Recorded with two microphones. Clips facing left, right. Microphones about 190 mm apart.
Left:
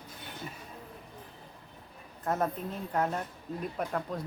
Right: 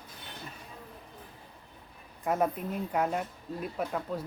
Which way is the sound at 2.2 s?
10° right (ahead or behind).